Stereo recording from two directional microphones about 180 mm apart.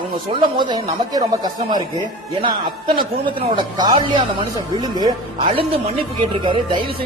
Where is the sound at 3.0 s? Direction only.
25° right (ahead or behind).